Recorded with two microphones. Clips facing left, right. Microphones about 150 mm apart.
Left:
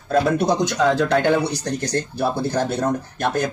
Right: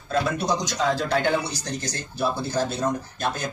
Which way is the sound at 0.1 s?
55° left (ahead or behind).